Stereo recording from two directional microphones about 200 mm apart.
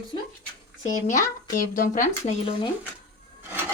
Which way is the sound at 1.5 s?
45° left (ahead or behind).